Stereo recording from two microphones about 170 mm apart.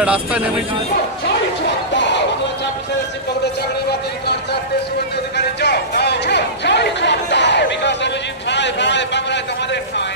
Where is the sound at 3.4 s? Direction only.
75° left (ahead or behind).